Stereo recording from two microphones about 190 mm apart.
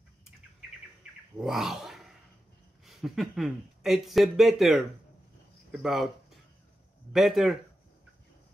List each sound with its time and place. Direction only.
1.4 s speech: centre (ahead or behind)
7.1 s speech: centre (ahead or behind)